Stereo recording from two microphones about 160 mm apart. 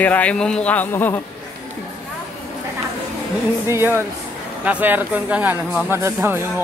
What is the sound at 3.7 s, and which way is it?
Speech, 15° right (ahead or behind).